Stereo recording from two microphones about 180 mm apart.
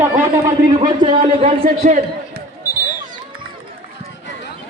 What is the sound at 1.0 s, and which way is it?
Speech, 30° right (ahead or behind).